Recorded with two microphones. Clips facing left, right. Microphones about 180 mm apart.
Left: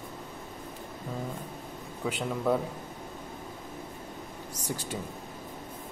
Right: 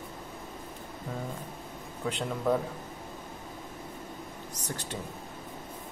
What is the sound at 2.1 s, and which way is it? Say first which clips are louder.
Speech: even; 10° left (ahead or behind).